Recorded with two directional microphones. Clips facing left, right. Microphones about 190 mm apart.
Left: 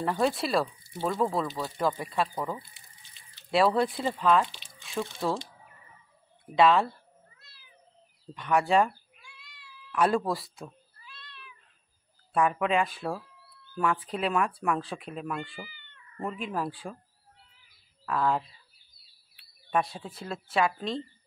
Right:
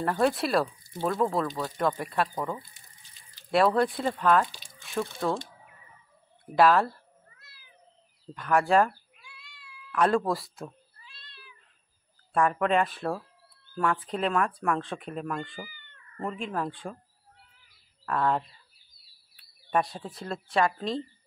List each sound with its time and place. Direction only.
0.0 s speech: centre (ahead or behind)
2.7 s water: 40° right (ahead or behind)
3.5 s speech: centre (ahead or behind)
6.5 s speech: 5° right (ahead or behind)
8.4 s speech: centre (ahead or behind)
11.1 s cat: 30° right (ahead or behind)
12.4 s speech: 5° left (ahead or behind)
15.6 s cat: 45° right (ahead or behind)
16.2 s speech: 5° left (ahead or behind)
18.0 s speech: centre (ahead or behind)
19.7 s speech: centre (ahead or behind)